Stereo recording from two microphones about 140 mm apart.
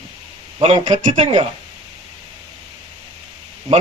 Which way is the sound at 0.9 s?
60° right (ahead or behind).